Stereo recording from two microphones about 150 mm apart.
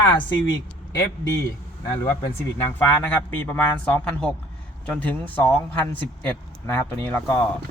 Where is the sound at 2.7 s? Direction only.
10° left (ahead or behind).